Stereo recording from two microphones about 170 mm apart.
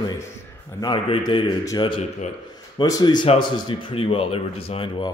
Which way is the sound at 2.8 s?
25° left (ahead or behind).